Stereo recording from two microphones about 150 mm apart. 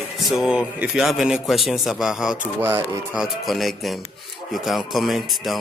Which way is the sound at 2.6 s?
15° right (ahead or behind).